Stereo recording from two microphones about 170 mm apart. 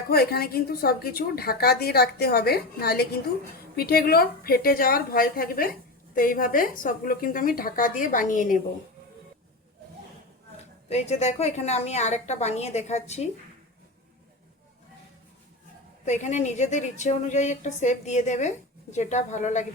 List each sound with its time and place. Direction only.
0.1 s a woman's voice: 65° left (ahead or behind); by 8.6 s 50° left (ahead or behind)
10.8 s a woman's voice: 40° left (ahead or behind)
16.0 s a woman's voice: 45° left (ahead or behind)